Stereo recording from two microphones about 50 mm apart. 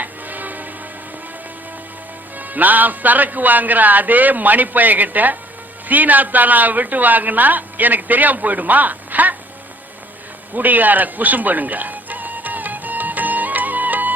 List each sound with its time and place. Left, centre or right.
0.0 s music: right
2.4 s a man's voice: right
10.5 s music: right